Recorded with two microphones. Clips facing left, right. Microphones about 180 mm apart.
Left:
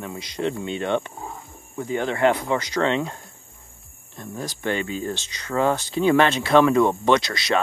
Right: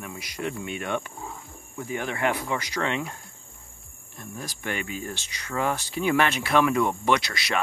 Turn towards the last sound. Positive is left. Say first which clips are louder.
# left 5 dB
turn(degrees=30)  # may be behind; listen again after turning